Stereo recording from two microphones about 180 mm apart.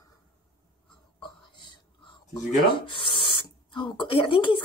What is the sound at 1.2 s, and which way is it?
Speech, 25° left (ahead or behind).